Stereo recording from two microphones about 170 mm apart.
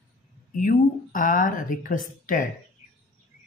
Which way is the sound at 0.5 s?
50° left (ahead or behind).